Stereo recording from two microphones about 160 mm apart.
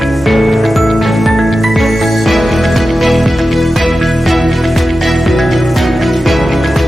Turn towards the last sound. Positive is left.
turn(degrees=0)  # may be behind; listen again after turning